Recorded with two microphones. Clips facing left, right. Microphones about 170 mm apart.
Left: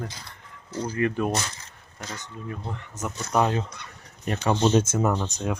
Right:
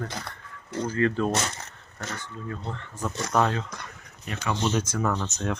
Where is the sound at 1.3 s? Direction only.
70° right (ahead or behind).